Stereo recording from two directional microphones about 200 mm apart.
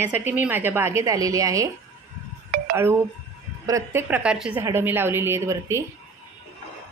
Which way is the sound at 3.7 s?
15° right (ahead or behind).